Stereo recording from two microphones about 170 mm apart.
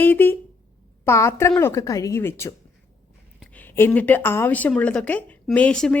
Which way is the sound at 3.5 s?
10° left (ahead or behind).